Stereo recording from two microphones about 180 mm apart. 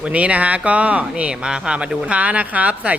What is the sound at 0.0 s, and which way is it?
A man's voice, 5° right (ahead or behind).